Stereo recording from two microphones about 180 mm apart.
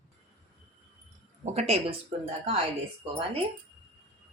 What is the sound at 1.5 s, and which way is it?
Speech, 35° right (ahead or behind).